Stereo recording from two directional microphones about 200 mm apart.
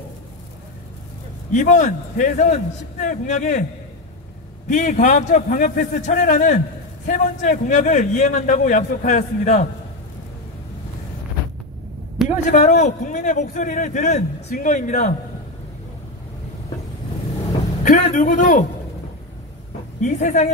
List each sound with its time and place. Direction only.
1.5 s a man's voice: 40° left (ahead or behind)
4.6 s a man's voice: 40° left (ahead or behind)
12.3 s a man's voice: 35° left (ahead or behind)
17.8 s a man's voice: 40° left (ahead or behind)
20.0 s a man's voice: 35° left (ahead or behind)